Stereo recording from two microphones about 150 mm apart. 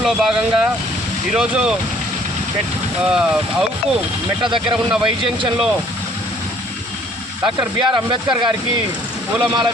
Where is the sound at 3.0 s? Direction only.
5° right (ahead or behind).